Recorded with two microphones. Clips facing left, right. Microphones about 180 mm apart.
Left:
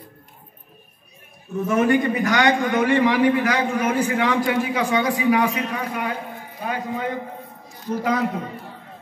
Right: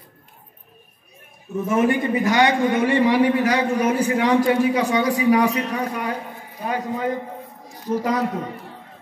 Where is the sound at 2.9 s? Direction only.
35° right (ahead or behind).